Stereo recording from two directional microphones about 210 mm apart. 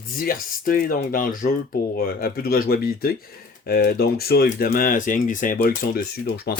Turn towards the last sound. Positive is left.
turn(degrees=50)  # may be behind; listen again after turning